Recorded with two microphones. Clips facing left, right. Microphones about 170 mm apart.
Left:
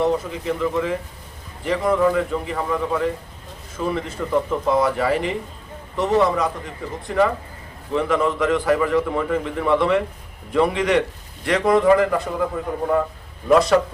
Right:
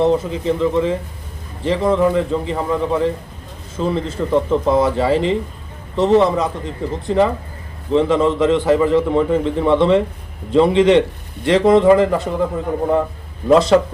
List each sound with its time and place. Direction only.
0.0 s a man's voice: 25° right (ahead or behind)
13.5 s a man's voice: 25° right (ahead or behind)